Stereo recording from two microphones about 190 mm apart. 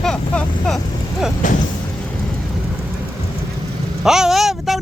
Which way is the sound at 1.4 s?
45° left (ahead or behind).